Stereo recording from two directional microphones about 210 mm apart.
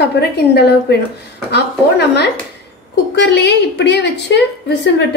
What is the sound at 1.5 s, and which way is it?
A woman's voice, 55° left (ahead or behind).